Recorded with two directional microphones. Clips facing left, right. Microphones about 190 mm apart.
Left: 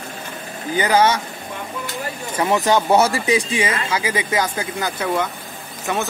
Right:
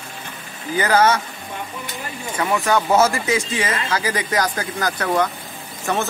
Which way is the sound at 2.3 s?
25° left (ahead or behind).